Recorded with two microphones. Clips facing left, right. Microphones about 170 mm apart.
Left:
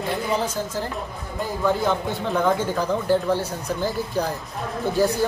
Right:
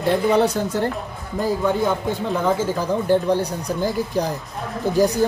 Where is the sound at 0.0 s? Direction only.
70° right (ahead or behind).